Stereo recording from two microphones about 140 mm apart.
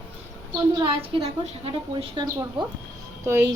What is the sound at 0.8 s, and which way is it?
Speech, 40° right (ahead or behind).